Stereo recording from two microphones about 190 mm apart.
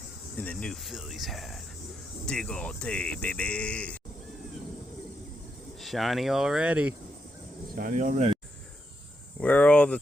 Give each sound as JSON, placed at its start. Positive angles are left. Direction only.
{"t": 0.3, "sound": "speech", "side_deg": 5}
{"t": 5.8, "sound": "speech", "side_deg": 0}
{"t": 7.8, "sound": "speech", "side_deg": -45}
{"t": 9.4, "sound": "cricket", "side_deg": 5}